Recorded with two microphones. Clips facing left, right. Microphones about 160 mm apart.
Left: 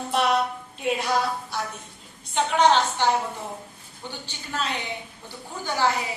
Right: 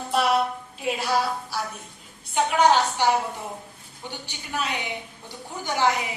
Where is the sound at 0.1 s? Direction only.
5° right (ahead or behind).